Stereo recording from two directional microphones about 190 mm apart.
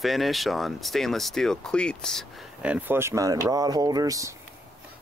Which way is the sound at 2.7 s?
10° right (ahead or behind).